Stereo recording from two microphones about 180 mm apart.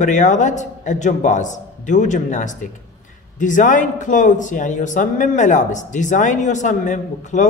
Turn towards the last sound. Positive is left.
turn(degrees=40)  # may be behind; listen again after turning